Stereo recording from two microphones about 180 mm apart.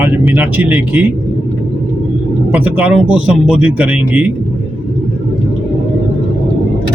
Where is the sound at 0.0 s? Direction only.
10° right (ahead or behind).